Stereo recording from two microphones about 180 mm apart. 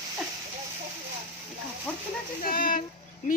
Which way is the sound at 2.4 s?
55° left (ahead or behind).